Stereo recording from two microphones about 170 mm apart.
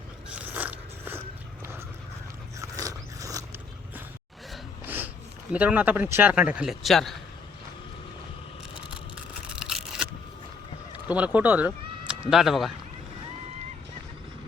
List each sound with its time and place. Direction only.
0.3 s biting: 10° right (ahead or behind)
2.6 s biting: 20° right (ahead or behind)
4.9 s speech: 10° right (ahead or behind)
9.5 s a sound: 5° right (ahead or behind)
11.1 s speech: 10° right (ahead or behind)